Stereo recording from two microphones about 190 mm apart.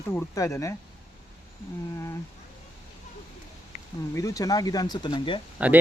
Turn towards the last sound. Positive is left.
turn(degrees=-10)  # may be behind; listen again after turning